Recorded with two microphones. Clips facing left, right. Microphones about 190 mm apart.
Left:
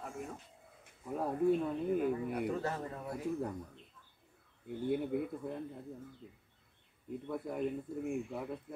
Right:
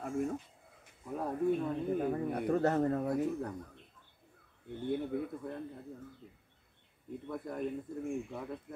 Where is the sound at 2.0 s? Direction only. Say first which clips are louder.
Right 1 dB; 45° right (ahead or behind).